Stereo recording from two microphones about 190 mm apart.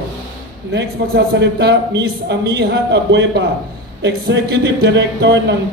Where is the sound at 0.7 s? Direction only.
60° right (ahead or behind).